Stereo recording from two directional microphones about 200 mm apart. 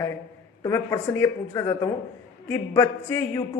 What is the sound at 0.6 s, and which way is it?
Speech, 15° left (ahead or behind).